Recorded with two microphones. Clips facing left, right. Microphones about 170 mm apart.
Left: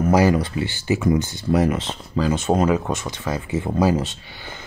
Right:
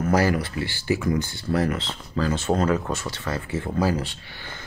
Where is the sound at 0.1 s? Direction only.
20° left (ahead or behind).